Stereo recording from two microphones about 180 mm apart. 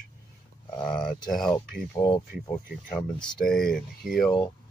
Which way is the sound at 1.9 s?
25° left (ahead or behind).